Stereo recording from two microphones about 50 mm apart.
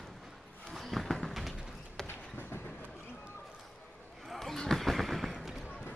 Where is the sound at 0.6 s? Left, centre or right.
Centre.